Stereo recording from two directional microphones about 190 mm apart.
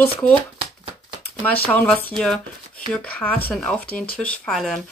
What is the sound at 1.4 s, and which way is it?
Speech, 5° left (ahead or behind).